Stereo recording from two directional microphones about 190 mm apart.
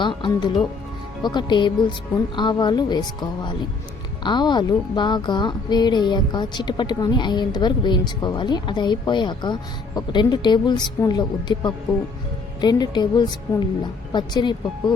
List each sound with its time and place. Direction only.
0.0 s a woman's voice: 25° left (ahead or behind)